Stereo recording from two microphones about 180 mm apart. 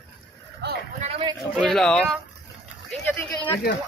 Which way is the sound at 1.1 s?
25° right (ahead or behind).